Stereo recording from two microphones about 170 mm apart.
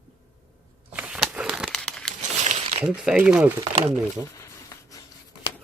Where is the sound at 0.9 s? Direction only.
5° right (ahead or behind).